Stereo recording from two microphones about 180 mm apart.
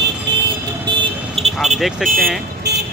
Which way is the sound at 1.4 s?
35° right (ahead or behind).